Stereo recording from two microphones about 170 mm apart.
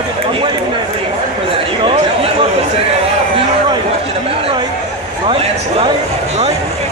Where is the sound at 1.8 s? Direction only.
35° right (ahead or behind).